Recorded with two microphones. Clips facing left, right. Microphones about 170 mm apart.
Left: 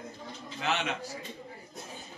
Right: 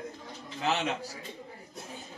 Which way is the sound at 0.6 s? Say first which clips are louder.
Right 2 dB; 35° right (ahead or behind).